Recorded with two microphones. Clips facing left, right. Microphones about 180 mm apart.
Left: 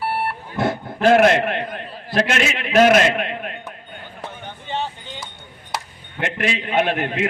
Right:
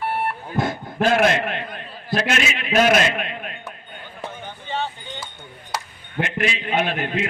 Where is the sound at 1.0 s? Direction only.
60° left (ahead or behind).